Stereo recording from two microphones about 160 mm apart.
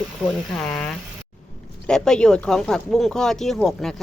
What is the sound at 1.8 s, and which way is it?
Speech, 5° left (ahead or behind).